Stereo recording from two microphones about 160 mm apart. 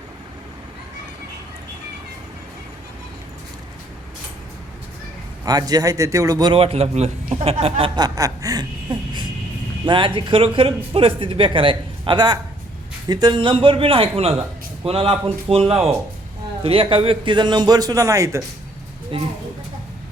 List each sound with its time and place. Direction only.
5.5 s a man's voice: 25° right (ahead or behind)
6.5 s speech: 35° right (ahead or behind)
7.9 s chuckle: 25° right (ahead or behind)
9.8 s a man's voice: 30° right (ahead or behind)
19.1 s speech: 35° right (ahead or behind)